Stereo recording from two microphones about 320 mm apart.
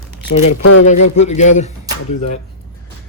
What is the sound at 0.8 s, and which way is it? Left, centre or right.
Speech, left.